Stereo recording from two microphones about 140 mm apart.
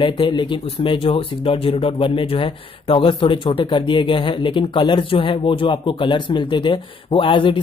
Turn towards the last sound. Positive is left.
turn(degrees=35)  # may be behind; listen again after turning